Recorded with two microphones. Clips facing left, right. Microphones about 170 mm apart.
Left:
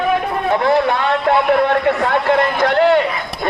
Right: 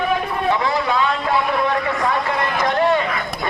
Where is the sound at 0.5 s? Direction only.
60° left (ahead or behind).